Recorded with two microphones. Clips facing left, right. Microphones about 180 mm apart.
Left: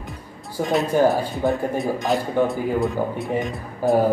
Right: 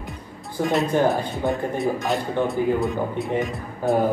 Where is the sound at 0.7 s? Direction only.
Centre (ahead or behind).